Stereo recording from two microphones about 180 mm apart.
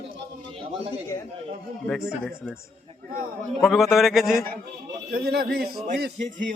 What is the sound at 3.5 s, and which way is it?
Speech, centre (ahead or behind).